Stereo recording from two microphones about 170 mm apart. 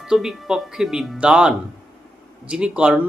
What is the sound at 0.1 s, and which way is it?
Speech, 5° right (ahead or behind).